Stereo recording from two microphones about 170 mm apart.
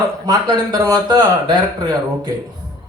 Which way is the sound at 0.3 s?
25° right (ahead or behind).